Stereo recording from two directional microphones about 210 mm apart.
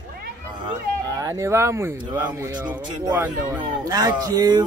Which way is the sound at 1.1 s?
15° right (ahead or behind).